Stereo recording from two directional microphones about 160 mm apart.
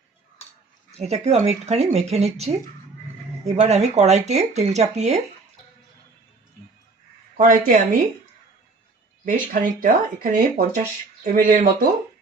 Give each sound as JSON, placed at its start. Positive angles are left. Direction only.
{"t": 0.9, "sound": "speech", "side_deg": -40}
{"t": 7.3, "sound": "speech", "side_deg": -50}
{"t": 9.2, "sound": "speech", "side_deg": -55}